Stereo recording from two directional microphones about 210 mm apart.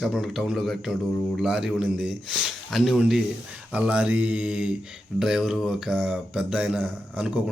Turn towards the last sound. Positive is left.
turn(degrees=-5)  # may be behind; listen again after turning